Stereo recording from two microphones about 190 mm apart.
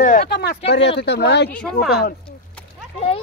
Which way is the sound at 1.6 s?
Centre (ahead or behind).